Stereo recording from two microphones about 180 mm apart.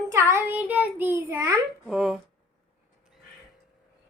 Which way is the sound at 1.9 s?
5° right (ahead or behind).